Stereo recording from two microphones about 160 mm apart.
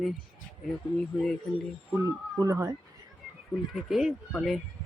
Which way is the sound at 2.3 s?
20° right (ahead or behind).